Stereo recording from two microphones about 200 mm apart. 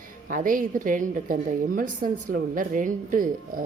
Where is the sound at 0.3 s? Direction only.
40° right (ahead or behind).